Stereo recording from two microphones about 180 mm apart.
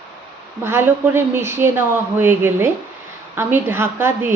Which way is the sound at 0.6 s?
10° right (ahead or behind).